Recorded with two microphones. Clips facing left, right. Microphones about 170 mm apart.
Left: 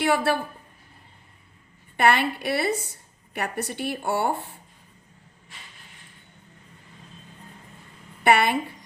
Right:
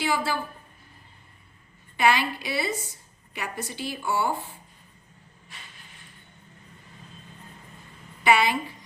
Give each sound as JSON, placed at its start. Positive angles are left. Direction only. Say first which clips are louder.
{"t": 0.0, "sound": "a woman's voice", "louder": "left 5 dB", "side_deg": 65}
{"t": 2.0, "sound": "a woman's voice", "louder": "left 2 dB", "side_deg": 60}
{"t": 8.2, "sound": "a woman's voice", "louder": "left 2 dB", "side_deg": 60}